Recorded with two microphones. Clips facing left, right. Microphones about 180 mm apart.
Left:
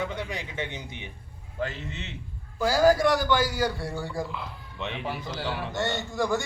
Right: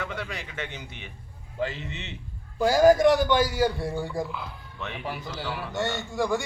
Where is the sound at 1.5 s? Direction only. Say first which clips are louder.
Right 2 dB; 15° right (ahead or behind).